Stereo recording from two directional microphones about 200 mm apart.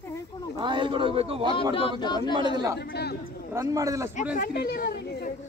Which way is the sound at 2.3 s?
20° right (ahead or behind).